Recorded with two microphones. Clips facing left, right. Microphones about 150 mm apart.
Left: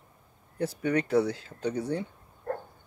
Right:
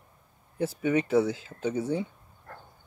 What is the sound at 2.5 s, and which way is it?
Dog, 50° left (ahead or behind).